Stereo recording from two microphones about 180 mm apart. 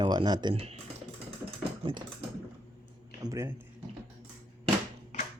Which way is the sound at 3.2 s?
15° right (ahead or behind).